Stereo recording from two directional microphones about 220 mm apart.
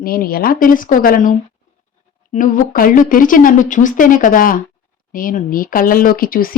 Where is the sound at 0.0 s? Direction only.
40° left (ahead or behind).